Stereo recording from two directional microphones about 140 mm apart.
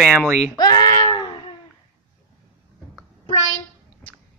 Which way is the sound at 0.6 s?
30° left (ahead or behind).